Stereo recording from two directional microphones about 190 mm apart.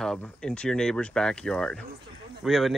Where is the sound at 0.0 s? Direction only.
5° left (ahead or behind).